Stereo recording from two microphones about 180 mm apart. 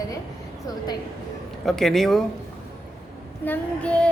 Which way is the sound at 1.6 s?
Centre (ahead or behind).